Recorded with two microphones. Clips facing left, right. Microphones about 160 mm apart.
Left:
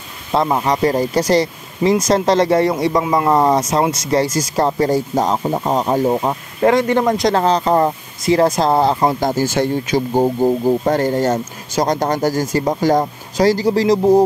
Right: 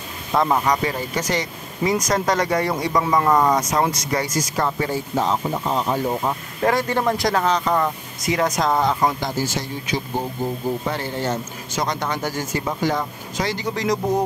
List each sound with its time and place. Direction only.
0.3 s speech: 20° left (ahead or behind)
0.8 s speech: 35° left (ahead or behind)
6.0 s speech: 25° left (ahead or behind)
9.2 s speech: 50° left (ahead or behind); by 14.2 s 30° left (ahead or behind)